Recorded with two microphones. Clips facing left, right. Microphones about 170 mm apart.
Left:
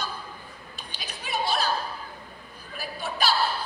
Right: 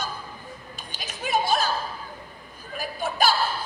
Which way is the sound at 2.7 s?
45° right (ahead or behind).